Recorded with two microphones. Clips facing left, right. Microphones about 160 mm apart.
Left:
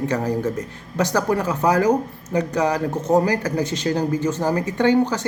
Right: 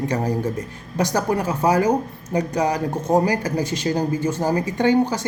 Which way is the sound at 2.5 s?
15° right (ahead or behind).